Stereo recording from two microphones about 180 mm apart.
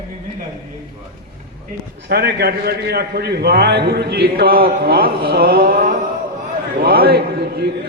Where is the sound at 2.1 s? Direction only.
60° right (ahead or behind).